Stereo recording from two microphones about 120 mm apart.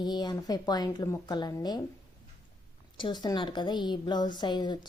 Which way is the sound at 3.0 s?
40° left (ahead or behind).